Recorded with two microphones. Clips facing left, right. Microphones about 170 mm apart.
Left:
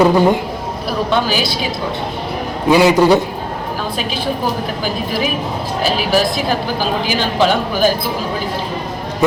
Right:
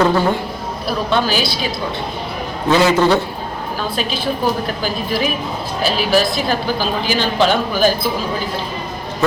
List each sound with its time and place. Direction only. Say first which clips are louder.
0.0 s a woman's voice: left 4 dB; 15° left (ahead or behind)
2.6 s a woman's voice: left 3 dB; 15° left (ahead or behind)
5.8 s a woman's voice: even; 10° left (ahead or behind)